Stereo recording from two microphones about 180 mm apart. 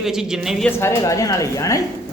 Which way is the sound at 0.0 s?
5° right (ahead or behind).